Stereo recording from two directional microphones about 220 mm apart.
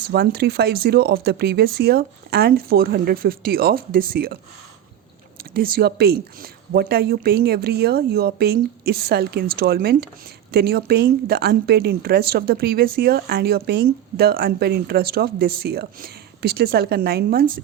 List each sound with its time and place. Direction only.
0.1 s speech: 45° right (ahead or behind)
5.4 s speech: 40° right (ahead or behind)